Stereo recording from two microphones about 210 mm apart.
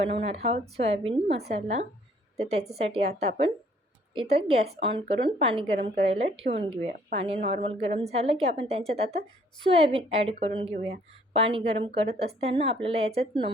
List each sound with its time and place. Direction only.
0.0 s a woman's voice: 30° right (ahead or behind)